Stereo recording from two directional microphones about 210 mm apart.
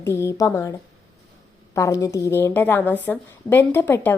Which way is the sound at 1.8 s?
15° left (ahead or behind).